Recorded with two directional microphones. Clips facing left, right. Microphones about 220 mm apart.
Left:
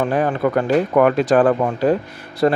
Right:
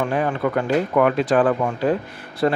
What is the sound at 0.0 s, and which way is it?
Speech, 40° left (ahead or behind).